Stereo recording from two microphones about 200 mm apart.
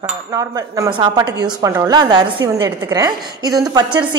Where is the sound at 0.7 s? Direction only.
25° right (ahead or behind).